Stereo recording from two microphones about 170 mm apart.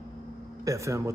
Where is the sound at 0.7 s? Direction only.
15° right (ahead or behind).